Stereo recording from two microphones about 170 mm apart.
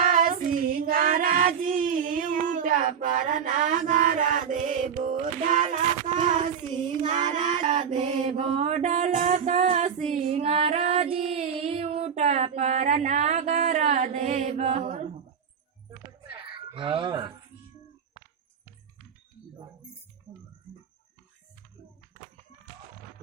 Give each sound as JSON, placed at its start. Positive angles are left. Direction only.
{"t": 0.0, "sound": "child singing", "side_deg": -55}
{"t": 7.3, "sound": "child singing", "side_deg": -45}
{"t": 8.0, "sound": "mantra", "side_deg": -40}
{"t": 15.9, "sound": "music", "side_deg": -30}